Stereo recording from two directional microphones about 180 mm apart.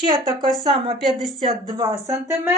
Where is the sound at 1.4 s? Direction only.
20° right (ahead or behind).